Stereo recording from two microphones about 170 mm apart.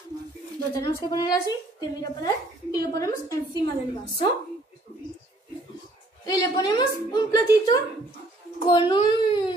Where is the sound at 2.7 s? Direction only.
20° left (ahead or behind).